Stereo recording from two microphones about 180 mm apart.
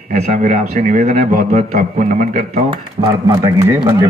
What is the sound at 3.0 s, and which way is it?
Speech, 30° right (ahead or behind).